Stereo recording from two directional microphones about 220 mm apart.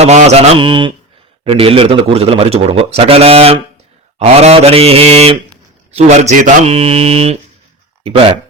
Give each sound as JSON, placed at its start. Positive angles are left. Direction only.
{"t": 0.0, "sound": "a man's voice", "side_deg": -30}